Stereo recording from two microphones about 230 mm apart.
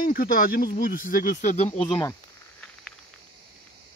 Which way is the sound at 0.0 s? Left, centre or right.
Left.